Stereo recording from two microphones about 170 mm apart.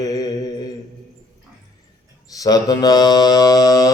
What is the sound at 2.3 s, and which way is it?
Mantra, 20° left (ahead or behind).